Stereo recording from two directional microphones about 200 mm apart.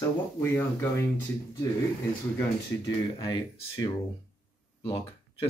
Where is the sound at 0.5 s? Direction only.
10° left (ahead or behind).